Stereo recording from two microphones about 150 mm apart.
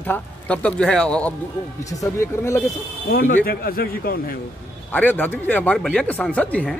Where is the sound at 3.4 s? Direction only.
85° left.